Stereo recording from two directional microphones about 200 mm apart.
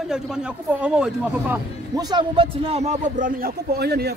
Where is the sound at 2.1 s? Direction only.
25° right (ahead or behind); by 4.1 s 55° right (ahead or behind).